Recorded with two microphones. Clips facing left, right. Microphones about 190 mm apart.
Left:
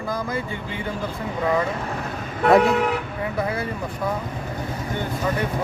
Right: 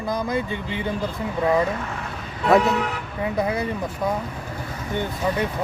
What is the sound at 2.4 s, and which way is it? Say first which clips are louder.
Speech: left 2 dB; 55° left (ahead or behind).